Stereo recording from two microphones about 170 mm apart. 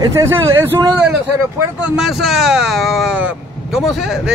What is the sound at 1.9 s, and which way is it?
Speech, centre (ahead or behind).